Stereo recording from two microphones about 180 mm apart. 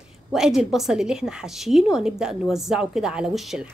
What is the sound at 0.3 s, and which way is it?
A woman's voice, centre (ahead or behind).